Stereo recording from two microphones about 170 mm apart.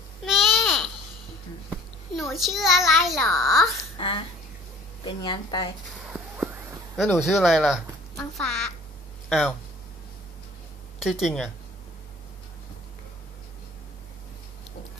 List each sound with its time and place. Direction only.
0.2 s babbling: centre (ahead or behind)
2.3 s a child's voice: centre (ahead or behind)
4.0 s a woman's voice: 30° left (ahead or behind)
6.0 s a sound: 5° right (ahead or behind)
7.2 s a child's voice: centre (ahead or behind)
11.0 s a child's voice: centre (ahead or behind)